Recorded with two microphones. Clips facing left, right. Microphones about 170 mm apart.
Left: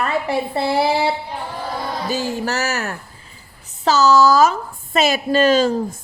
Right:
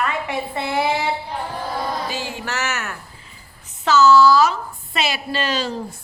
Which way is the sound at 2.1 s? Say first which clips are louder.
Left 6 dB; 40° left (ahead or behind).